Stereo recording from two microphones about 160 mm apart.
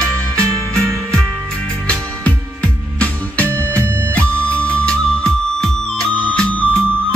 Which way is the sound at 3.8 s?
10° left (ahead or behind).